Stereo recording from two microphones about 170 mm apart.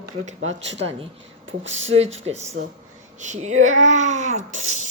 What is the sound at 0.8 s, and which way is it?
Speech, 35° right (ahead or behind).